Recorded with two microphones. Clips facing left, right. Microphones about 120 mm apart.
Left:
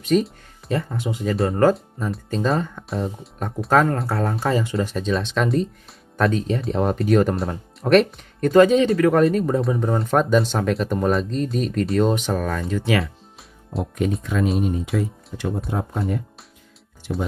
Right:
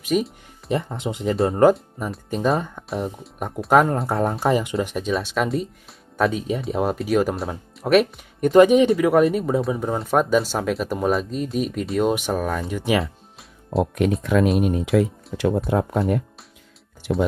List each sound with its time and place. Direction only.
0.0 s speech: 10° right (ahead or behind); by 1.4 s 25° right (ahead or behind)
1.6 s speech: 15° right (ahead or behind)
13.0 s music: centre (ahead or behind)
14.2 s speech: 70° right (ahead or behind)
15.3 s speech: 90° right
15.7 s speech: 70° right (ahead or behind)